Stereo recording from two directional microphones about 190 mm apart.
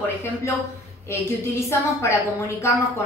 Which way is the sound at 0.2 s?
15° left (ahead or behind).